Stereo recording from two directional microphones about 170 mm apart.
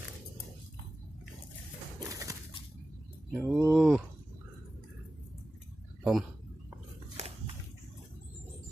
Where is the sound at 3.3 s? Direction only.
5° right (ahead or behind).